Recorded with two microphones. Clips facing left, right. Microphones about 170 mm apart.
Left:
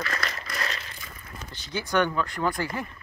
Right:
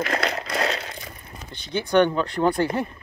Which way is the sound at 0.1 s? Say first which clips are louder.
Right 8 dB; 65° right (ahead or behind).